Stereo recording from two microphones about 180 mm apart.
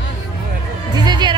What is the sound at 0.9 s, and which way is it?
Music, 20° right (ahead or behind).